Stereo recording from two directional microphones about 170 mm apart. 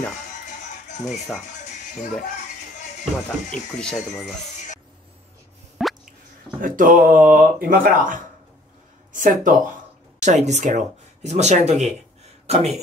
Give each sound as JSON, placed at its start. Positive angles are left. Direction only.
{"t": 0.5, "sound": "music", "side_deg": 45}
{"t": 5.8, "sound": "drip", "side_deg": 0}
{"t": 6.6, "sound": "speech", "side_deg": -55}